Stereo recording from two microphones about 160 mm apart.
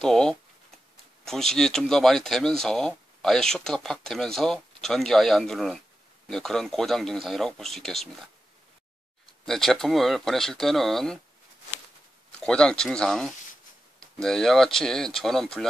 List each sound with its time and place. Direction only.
0.0 s speech: 5° left (ahead or behind)
9.5 s speech: centre (ahead or behind)
12.3 s speech: 5° left (ahead or behind)